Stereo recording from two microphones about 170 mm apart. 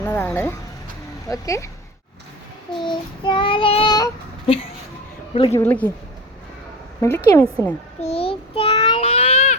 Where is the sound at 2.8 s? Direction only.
30° left (ahead or behind).